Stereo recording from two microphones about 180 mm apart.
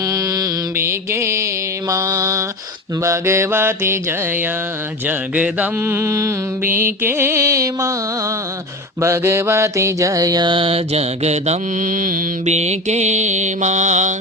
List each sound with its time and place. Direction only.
0.1 s mantra: 15° right (ahead or behind)
5.0 s mantra: 10° right (ahead or behind)
9.0 s mantra: 15° right (ahead or behind); by 14.1 s 40° right (ahead or behind)